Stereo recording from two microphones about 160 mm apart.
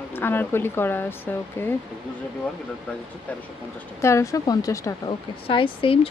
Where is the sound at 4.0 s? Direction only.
20° left (ahead or behind).